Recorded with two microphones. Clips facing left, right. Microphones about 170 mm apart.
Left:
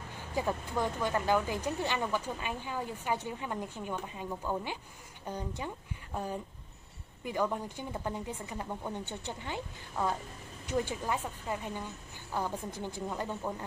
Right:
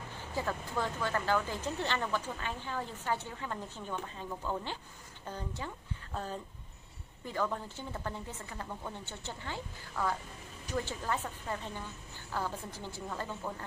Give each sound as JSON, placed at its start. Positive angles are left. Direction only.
{"t": 0.3, "sound": "speech", "side_deg": 15}